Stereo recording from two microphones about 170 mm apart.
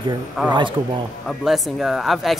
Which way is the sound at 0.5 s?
25° right (ahead or behind).